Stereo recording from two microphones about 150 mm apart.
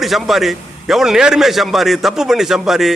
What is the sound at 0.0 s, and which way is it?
A man's voice, centre (ahead or behind).